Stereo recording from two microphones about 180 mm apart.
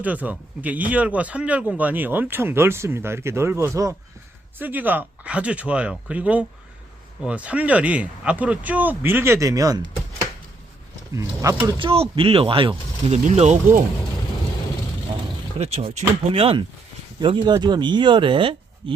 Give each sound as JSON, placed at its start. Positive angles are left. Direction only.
{"t": 0.0, "sound": "speech", "side_deg": -10}
{"t": 11.8, "sound": "speech", "side_deg": -30}
{"t": 15.5, "sound": "speech", "side_deg": -35}